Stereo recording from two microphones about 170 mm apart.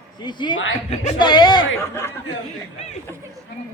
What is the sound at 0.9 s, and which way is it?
Speech, 40° left (ahead or behind).